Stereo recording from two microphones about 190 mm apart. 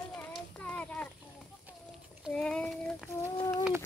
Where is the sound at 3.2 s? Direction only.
15° left (ahead or behind).